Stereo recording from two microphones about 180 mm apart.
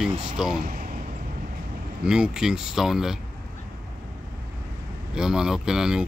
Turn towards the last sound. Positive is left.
turn(degrees=-5)  # may be behind; listen again after turning